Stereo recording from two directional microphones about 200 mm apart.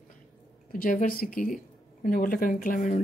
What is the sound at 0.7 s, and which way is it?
Speech, 45° left (ahead or behind).